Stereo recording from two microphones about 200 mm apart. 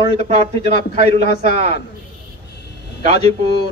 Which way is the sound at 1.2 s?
55° left (ahead or behind).